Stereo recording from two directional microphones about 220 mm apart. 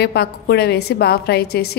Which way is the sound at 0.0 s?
50° left (ahead or behind).